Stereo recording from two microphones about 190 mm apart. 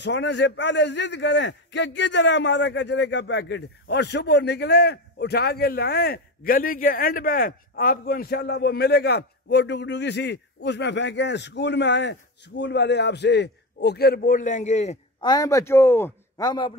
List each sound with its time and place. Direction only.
0.0 s a man's voice: 70° left (ahead or behind); by 15.0 s 35° left (ahead or behind)
15.1 s a man's voice: 20° left (ahead or behind)